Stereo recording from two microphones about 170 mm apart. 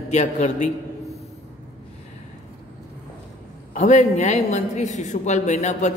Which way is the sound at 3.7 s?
45° left (ahead or behind).